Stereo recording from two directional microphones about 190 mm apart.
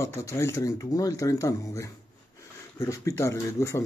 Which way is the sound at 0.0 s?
15° left (ahead or behind).